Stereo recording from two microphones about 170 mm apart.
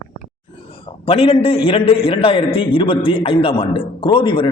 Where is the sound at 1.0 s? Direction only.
35° left (ahead or behind).